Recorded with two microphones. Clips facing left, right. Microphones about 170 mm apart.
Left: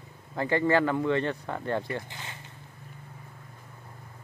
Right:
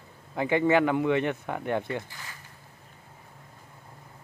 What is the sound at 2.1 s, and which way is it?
Zipper, 25° left (ahead or behind).